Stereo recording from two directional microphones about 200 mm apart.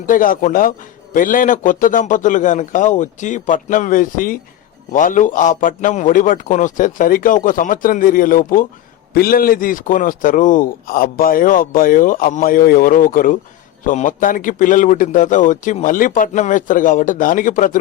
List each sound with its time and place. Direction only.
0.1 s a man's voice: 45° left (ahead or behind)